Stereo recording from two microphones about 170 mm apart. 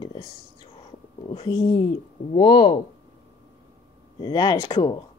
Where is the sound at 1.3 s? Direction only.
25° left (ahead or behind).